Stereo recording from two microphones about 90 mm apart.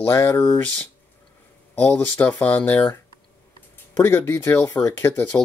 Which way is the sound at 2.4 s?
20° left (ahead or behind).